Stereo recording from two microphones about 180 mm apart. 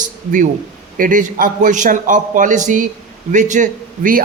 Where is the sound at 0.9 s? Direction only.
50° right (ahead or behind).